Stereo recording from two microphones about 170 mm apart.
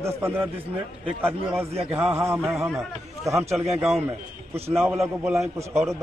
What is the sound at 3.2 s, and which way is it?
Speech, 15° right (ahead or behind).